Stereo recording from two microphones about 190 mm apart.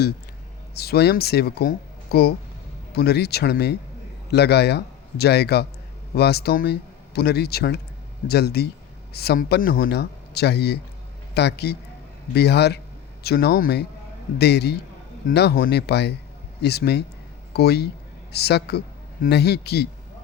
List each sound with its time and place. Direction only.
0.7 s a man's voice: 55° left (ahead or behind)